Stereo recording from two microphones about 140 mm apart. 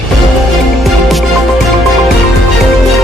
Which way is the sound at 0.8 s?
Centre (ahead or behind).